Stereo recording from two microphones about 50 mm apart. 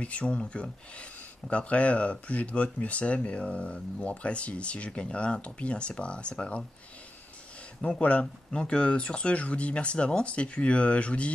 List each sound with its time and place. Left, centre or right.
0.0 s speech: left
8.0 s speech: left